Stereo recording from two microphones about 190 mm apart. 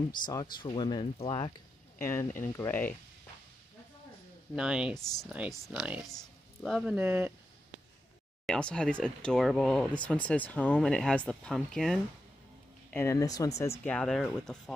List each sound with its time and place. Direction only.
0.3 s speech: 20° left (ahead or behind)
2.0 s speech: 15° left (ahead or behind)
4.6 s speech: 5° right (ahead or behind)
7.0 s speech: 10° right (ahead or behind)
8.5 s speech: 5° left (ahead or behind)
12.9 s speech: 15° left (ahead or behind)